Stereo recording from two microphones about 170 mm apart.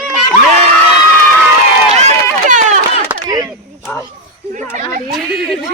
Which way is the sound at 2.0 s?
45° right (ahead or behind).